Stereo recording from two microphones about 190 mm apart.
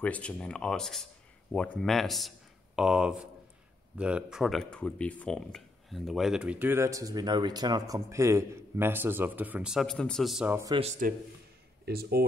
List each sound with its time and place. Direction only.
0.0 s speech: 5° left (ahead or behind); by 10.8 s 15° right (ahead or behind)
10.8 s speech: 40° right (ahead or behind)
11.8 s speech: 55° right (ahead or behind)